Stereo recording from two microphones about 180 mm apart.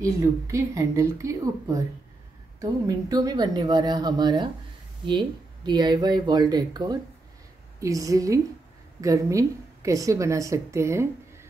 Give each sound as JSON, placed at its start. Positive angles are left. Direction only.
{"t": 0.0, "sound": "a woman's voice", "side_deg": -15}
{"t": 5.7, "sound": "a woman's voice", "side_deg": -25}